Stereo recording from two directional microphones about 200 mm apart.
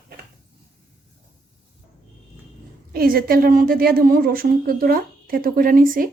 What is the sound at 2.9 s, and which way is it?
A woman's voice, 50° right (ahead or behind).